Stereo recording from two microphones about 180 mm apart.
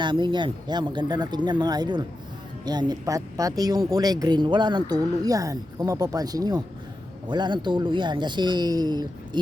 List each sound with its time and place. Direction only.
0.0 s speech: 25° right (ahead or behind)